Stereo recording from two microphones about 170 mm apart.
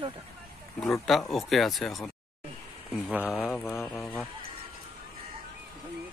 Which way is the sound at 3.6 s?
15° left (ahead or behind).